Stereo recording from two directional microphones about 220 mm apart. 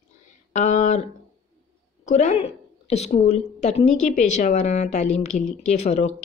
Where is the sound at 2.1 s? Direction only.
30° left (ahead or behind).